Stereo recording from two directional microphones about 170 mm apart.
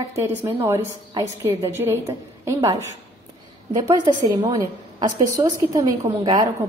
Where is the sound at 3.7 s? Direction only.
25° right (ahead or behind).